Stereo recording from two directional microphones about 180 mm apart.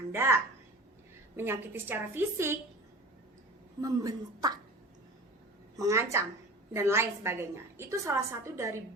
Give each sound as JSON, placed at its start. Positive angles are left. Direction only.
{"t": 0.1, "sound": "a child's voice", "side_deg": -15}
{"t": 1.4, "sound": "a woman's voice", "side_deg": -10}
{"t": 3.8, "sound": "speech", "side_deg": -20}
{"t": 5.7, "sound": "a woman's voice", "side_deg": -15}